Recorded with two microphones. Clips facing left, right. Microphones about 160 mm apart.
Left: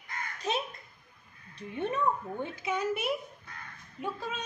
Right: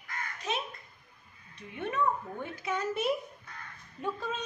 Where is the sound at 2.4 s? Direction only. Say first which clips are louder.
Left 2 dB; 15° left (ahead or behind).